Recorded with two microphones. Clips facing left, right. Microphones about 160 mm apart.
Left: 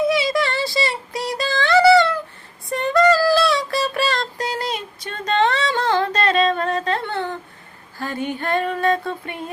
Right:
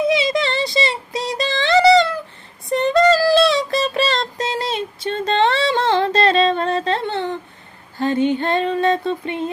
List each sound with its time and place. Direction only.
0.1 s child singing: 20° right (ahead or behind)
2.6 s female singing: 20° right (ahead or behind)